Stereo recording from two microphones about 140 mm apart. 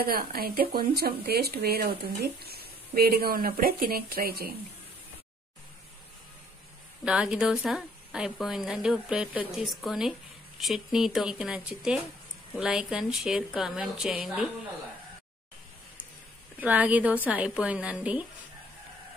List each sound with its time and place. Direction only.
0.0 s speech: 90° right
7.1 s a woman's voice: 5° right (ahead or behind)
16.5 s a woman's voice: 10° right (ahead or behind)